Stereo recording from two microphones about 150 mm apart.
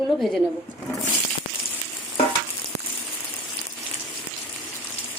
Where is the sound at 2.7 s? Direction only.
15° left (ahead or behind).